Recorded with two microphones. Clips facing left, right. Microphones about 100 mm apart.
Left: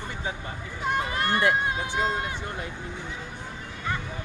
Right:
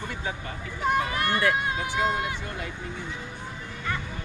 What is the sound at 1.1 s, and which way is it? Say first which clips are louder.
Run: left 1 dB; 25° left (ahead or behind).